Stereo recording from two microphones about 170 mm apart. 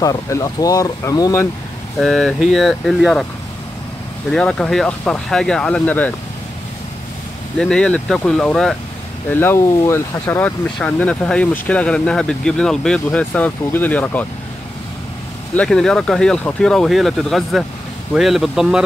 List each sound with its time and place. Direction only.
0.0 s speech: 20° left (ahead or behind)
2.0 s speech: centre (ahead or behind)
4.3 s speech: 5° left (ahead or behind)
7.5 s speech: 5° left (ahead or behind)
15.5 s speech: 5° left (ahead or behind)